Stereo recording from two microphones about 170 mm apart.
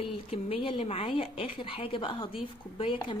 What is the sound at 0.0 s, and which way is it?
A woman's voice, 35° left (ahead or behind).